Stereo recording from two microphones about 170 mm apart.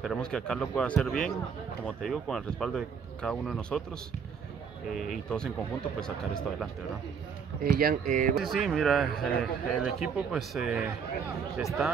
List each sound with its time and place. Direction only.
0.0 s speech: centre (ahead or behind)
4.9 s speech: 5° left (ahead or behind)
7.6 s speech: 55° right (ahead or behind)
8.4 s speech: centre (ahead or behind)